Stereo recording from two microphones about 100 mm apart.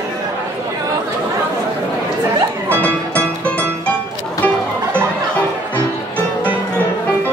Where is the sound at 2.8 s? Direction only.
15° left (ahead or behind).